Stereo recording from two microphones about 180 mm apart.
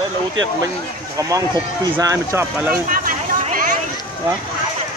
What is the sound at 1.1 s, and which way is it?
Speech, 20° right (ahead or behind).